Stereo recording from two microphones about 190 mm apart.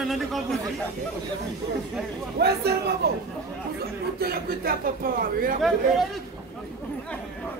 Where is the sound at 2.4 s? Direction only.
60° right (ahead or behind).